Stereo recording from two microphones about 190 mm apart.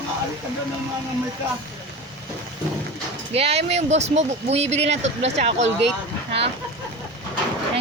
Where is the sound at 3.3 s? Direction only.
30° right (ahead or behind).